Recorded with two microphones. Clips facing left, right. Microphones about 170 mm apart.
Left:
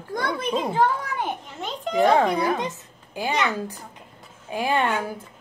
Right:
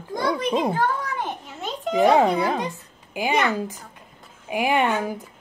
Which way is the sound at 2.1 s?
20° right (ahead or behind).